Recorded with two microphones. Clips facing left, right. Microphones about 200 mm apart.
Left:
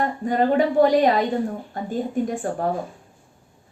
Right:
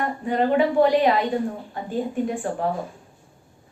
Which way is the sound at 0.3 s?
40° left (ahead or behind).